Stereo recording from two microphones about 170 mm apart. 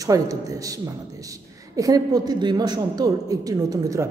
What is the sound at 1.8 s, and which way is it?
A woman's voice, 20° right (ahead or behind).